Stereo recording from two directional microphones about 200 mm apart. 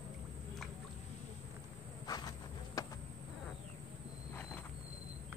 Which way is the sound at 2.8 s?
15° left (ahead or behind).